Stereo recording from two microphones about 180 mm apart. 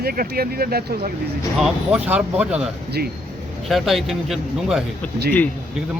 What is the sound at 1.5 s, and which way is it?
Speech, centre (ahead or behind).